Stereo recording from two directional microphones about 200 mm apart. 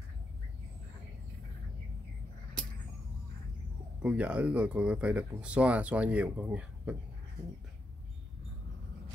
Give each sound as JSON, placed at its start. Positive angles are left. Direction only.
{"t": 4.0, "sound": "speech", "side_deg": -5}